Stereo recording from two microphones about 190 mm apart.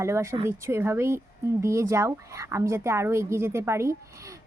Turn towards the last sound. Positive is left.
turn(degrees=-15)  # may be behind; listen again after turning